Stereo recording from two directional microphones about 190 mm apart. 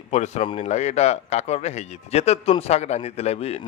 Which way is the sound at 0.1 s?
35° left (ahead or behind).